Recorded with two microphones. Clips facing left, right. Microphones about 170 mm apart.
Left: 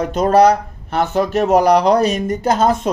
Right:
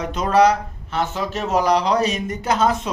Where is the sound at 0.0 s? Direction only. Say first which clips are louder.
Left 4 dB; 50° left (ahead or behind).